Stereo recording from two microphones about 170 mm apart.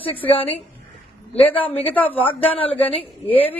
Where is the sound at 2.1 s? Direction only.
35° left (ahead or behind).